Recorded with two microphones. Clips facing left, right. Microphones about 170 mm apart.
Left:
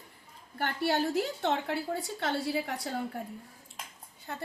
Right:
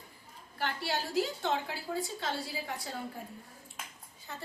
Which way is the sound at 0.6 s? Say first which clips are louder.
Left 6 dB; 55° left (ahead or behind).